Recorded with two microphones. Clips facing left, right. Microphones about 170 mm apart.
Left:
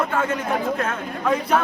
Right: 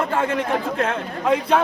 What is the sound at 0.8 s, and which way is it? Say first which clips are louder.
Speech: right 3 dB; 30° right (ahead or behind).